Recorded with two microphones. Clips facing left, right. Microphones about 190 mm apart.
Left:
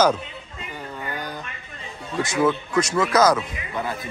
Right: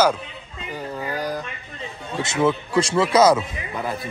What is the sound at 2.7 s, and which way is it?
Speech, 30° right (ahead or behind).